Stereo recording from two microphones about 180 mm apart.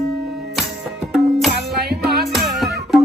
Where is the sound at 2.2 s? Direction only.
Centre (ahead or behind).